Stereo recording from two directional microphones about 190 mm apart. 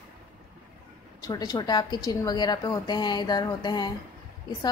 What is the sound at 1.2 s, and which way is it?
A woman's voice, 20° left (ahead or behind).